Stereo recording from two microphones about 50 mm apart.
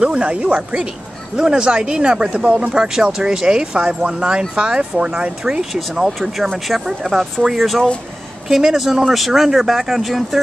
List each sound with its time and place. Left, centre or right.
0.0 s speech: right; by 10.4 s centre